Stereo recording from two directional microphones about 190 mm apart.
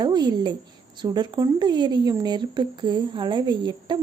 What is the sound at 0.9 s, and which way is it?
Speech, 25° right (ahead or behind).